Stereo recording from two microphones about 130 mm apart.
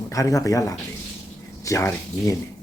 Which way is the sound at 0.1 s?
25° left (ahead or behind).